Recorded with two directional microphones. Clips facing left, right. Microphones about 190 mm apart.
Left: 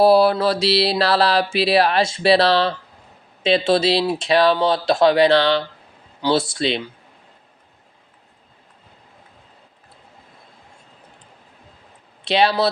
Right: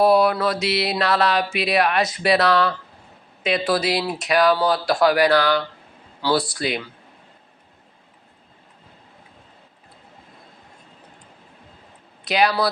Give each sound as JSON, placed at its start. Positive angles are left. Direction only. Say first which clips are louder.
{"t": 0.0, "sound": "mantra", "louder": "left 3 dB", "side_deg": 30}
{"t": 3.4, "sound": "speech", "louder": "left 4 dB", "side_deg": 25}
{"t": 12.2, "sound": "speech", "louder": "left 2 dB", "side_deg": 30}